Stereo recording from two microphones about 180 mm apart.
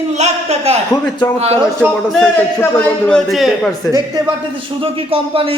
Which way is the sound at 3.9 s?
20° right (ahead or behind).